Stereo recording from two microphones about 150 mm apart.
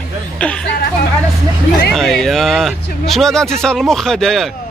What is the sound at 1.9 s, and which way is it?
Speech, 5° left (ahead or behind).